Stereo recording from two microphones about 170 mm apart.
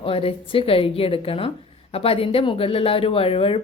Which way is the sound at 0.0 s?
35° left (ahead or behind).